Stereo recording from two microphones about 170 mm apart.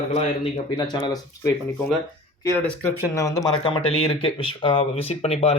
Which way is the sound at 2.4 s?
15° left (ahead or behind).